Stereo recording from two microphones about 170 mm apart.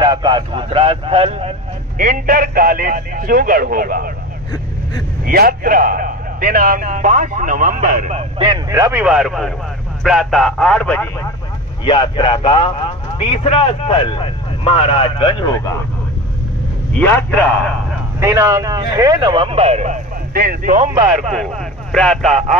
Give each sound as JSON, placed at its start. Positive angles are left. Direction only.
{"t": 0.0, "sound": "a man's voice", "side_deg": -25}
{"t": 2.0, "sound": "speech", "side_deg": -55}
{"t": 5.2, "sound": "a man's voice", "side_deg": -60}
{"t": 8.6, "sound": "speech", "side_deg": -20}
{"t": 9.0, "sound": "speech", "side_deg": -5}
{"t": 11.8, "sound": "a man's voice", "side_deg": 30}
{"t": 16.9, "sound": "a man's voice", "side_deg": 10}
{"t": 18.2, "sound": "speech", "side_deg": -20}
{"t": 20.3, "sound": "a man's voice", "side_deg": -55}
{"t": 21.9, "sound": "speech", "side_deg": 5}